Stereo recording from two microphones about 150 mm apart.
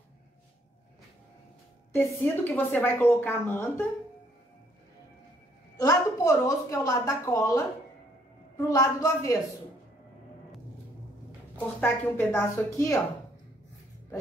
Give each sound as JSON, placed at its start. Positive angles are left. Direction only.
{"t": 1.9, "sound": "a woman's voice", "side_deg": 15}
{"t": 5.8, "sound": "a woman's voice", "side_deg": 25}
{"t": 11.8, "sound": "a woman's voice", "side_deg": 15}